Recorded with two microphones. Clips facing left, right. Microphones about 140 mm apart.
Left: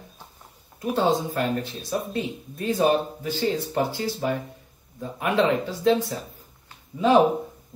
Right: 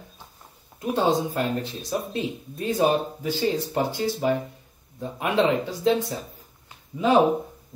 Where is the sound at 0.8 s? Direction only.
20° right (ahead or behind).